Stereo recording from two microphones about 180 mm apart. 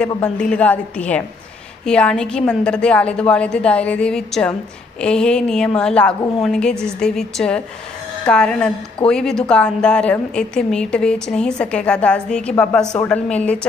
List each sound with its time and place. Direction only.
0.2 s a woman's voice: 5° left (ahead or behind)